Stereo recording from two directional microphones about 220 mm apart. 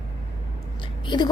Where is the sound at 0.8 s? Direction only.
20° left (ahead or behind).